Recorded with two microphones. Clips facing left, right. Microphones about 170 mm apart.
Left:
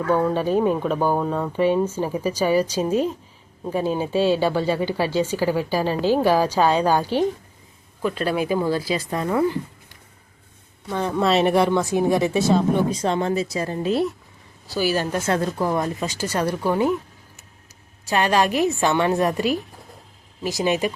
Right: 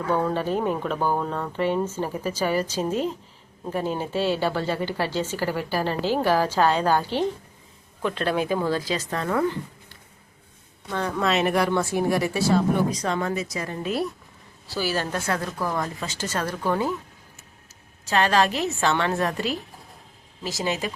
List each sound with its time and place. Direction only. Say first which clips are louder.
0.2 s speech: left 4 dB; 10° left (ahead or behind)
10.9 s speech: left 3 dB; 20° left (ahead or behind)
11.2 s speech: left 5 dB; 35° left (ahead or behind)
11.7 s speech: left 3 dB; 20° left (ahead or behind)
14.7 s speech: left 4 dB; 15° left (ahead or behind)
15.3 s speech: left 8 dB; 25° left (ahead or behind)
18.1 s speech: left 2 dB; 15° left (ahead or behind)